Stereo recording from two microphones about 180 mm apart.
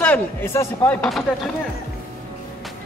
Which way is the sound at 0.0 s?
10° left (ahead or behind).